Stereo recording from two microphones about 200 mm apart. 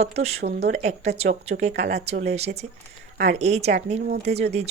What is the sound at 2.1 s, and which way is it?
Speech, 55° right (ahead or behind).